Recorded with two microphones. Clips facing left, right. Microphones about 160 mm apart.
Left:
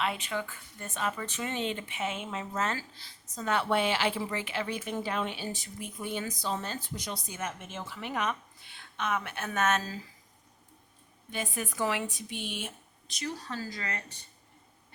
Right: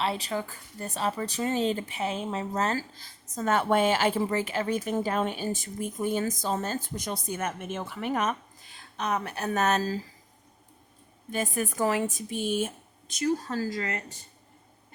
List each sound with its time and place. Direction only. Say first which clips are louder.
0.0 s speech: right 3 dB; 35° right (ahead or behind)
11.3 s speech: right 6 dB; 45° right (ahead or behind)